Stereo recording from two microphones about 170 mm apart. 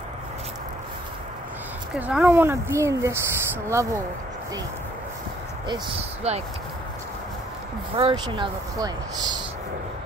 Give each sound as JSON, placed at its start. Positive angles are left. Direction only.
{"t": 2.0, "sound": "speech", "side_deg": -10}
{"t": 5.7, "sound": "speech", "side_deg": -35}
{"t": 7.9, "sound": "speech", "side_deg": -30}